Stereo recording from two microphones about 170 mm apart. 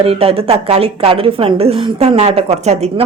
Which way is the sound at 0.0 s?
35° right (ahead or behind).